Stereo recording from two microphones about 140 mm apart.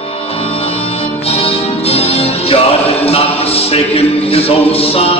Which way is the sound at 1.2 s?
45° left (ahead or behind).